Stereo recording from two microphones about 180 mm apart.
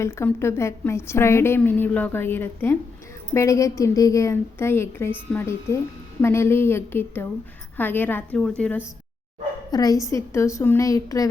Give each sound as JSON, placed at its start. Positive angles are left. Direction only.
{"t": 0.0, "sound": "a woman's voice", "side_deg": 15}
{"t": 9.7, "sound": "a woman's voice", "side_deg": 20}